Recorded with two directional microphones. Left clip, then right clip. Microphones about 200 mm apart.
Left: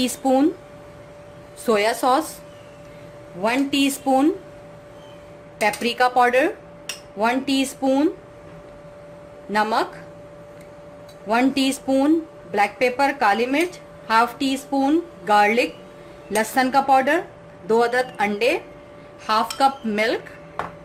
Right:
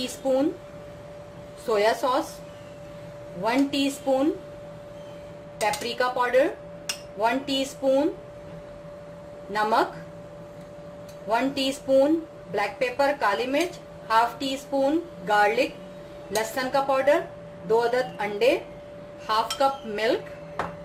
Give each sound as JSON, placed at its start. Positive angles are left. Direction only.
{"t": 1.6, "sound": "speech", "side_deg": 50}
{"t": 3.4, "sound": "speech", "side_deg": 50}
{"t": 5.5, "sound": "speech", "side_deg": 55}
{"t": 9.5, "sound": "speech", "side_deg": 55}
{"t": 11.3, "sound": "speech", "side_deg": 50}